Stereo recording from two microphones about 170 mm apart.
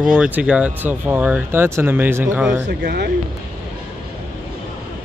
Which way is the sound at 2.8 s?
70° right (ahead or behind).